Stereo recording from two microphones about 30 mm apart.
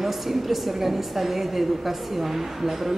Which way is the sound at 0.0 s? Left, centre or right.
Centre.